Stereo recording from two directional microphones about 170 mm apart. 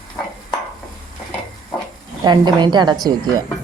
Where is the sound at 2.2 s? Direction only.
25° right (ahead or behind).